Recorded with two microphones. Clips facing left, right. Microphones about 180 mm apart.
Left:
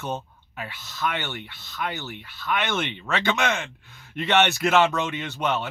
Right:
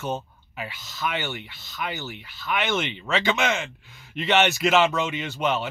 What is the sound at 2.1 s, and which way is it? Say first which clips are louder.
Speech: left 2 dB; 55° left (ahead or behind).